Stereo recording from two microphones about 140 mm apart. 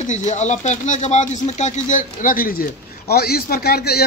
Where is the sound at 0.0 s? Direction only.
60° left (ahead or behind).